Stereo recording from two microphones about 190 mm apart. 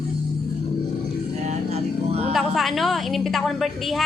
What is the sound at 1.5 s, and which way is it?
Speech, 35° right (ahead or behind).